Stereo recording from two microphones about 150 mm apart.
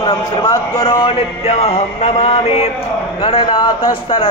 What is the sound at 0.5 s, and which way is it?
Speech, 25° left (ahead or behind).